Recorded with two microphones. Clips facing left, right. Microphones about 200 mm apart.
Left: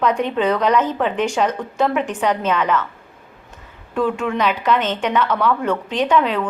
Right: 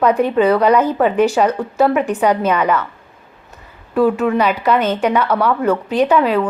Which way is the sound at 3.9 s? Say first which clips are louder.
Right 6 dB; 5° right (ahead or behind).